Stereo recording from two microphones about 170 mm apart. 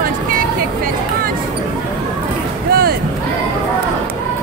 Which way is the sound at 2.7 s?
65° right (ahead or behind).